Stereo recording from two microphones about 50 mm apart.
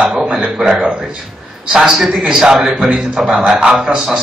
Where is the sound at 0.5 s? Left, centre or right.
Centre.